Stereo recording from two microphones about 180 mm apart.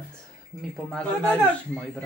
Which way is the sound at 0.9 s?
5° left (ahead or behind).